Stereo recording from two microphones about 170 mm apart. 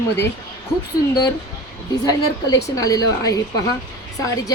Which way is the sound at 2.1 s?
20° left (ahead or behind).